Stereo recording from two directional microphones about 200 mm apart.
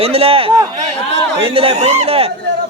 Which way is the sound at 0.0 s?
30° right (ahead or behind).